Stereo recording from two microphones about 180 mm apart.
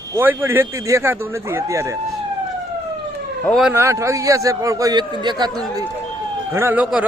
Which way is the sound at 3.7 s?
15° right (ahead or behind).